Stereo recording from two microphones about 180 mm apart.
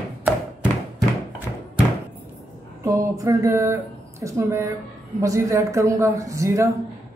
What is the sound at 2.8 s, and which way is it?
Speech, 15° right (ahead or behind).